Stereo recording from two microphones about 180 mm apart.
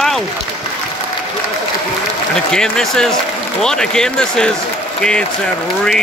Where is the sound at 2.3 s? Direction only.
5° left (ahead or behind).